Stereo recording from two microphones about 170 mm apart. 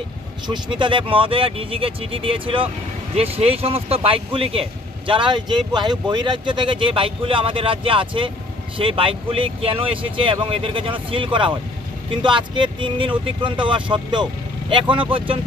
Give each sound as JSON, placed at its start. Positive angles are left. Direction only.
{"t": 0.5, "sound": "speech", "side_deg": -30}